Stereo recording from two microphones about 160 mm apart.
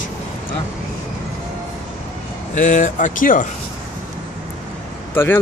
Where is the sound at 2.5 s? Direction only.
50° left (ahead or behind).